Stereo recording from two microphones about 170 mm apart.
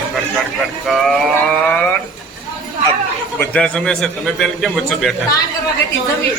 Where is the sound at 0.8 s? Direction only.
Centre (ahead or behind).